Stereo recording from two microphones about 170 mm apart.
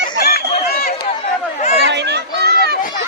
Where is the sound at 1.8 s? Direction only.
85° right.